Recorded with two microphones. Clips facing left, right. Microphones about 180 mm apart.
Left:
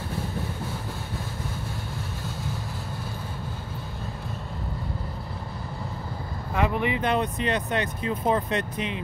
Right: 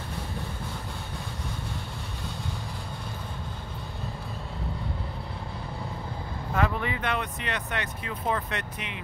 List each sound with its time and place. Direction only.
6.5 s vehicle: 15° left (ahead or behind)
7.1 s speech: 30° left (ahead or behind)